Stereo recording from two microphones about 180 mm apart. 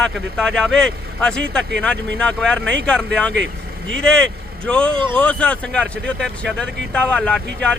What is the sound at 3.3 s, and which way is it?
Vehicle, 80° right.